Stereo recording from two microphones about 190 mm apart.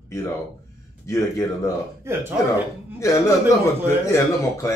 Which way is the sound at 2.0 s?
15° right (ahead or behind).